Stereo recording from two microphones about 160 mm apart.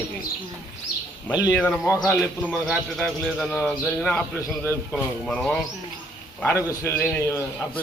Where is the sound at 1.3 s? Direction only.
25° left (ahead or behind).